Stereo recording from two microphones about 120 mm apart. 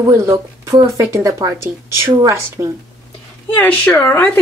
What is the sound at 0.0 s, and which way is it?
A woman's voice, 25° right (ahead or behind).